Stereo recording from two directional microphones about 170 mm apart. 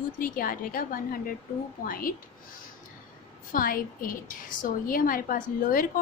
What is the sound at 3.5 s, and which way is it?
A woman's voice, 55° left (ahead or behind).